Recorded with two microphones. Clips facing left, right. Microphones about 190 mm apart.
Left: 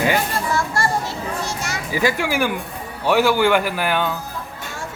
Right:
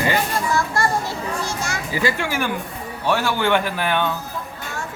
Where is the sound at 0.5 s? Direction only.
25° left (ahead or behind).